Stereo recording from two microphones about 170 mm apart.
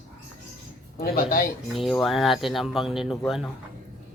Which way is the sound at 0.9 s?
60° left (ahead or behind).